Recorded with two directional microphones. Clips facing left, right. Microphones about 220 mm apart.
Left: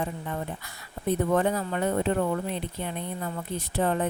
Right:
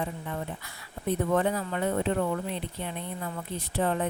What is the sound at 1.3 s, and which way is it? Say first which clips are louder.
Speech: even; 45° left (ahead or behind).